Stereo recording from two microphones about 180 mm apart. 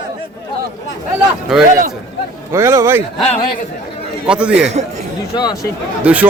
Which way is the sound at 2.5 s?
15° right (ahead or behind).